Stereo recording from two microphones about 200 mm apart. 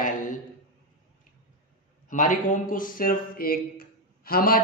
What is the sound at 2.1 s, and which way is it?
A man's voice, 40° left (ahead or behind).